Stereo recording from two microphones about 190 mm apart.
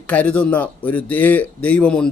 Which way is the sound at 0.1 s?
5° left (ahead or behind).